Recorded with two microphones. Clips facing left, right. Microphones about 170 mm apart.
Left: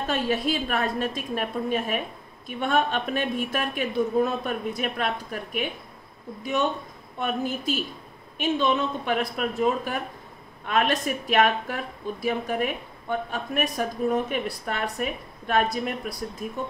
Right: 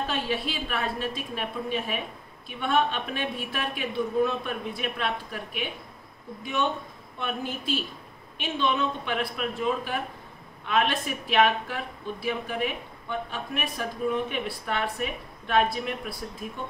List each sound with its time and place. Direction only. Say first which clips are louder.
0.0 s a woman's voice: left 4 dB; 45° left (ahead or behind)
7.2 s a woman's voice: left 5 dB; 45° left (ahead or behind)